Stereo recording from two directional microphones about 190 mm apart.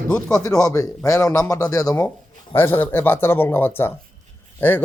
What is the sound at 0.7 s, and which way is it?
Speech, 15° left (ahead or behind).